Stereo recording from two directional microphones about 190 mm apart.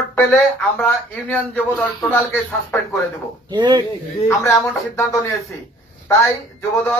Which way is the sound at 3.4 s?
25° right (ahead or behind).